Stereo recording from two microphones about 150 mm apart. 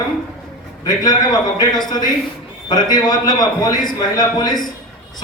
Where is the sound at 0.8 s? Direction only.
25° left (ahead or behind).